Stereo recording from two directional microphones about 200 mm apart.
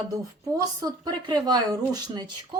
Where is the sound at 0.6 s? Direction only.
20° right (ahead or behind).